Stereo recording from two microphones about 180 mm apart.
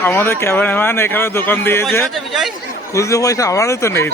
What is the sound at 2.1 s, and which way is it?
Speech, centre (ahead or behind).